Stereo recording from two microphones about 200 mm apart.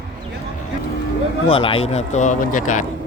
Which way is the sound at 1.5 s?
25° left (ahead or behind).